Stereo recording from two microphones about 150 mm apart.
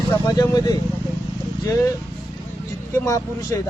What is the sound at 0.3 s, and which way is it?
Speech, 25° left (ahead or behind).